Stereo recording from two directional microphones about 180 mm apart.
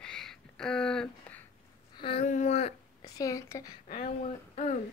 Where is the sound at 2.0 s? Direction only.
30° left (ahead or behind).